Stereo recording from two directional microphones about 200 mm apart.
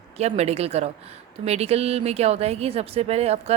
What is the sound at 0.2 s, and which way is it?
Speech, 30° right (ahead or behind).